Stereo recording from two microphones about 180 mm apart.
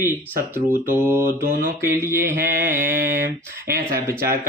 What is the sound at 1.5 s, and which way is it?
Speech, 50° right (ahead or behind).